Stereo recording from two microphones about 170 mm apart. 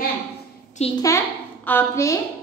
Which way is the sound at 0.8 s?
40° left (ahead or behind).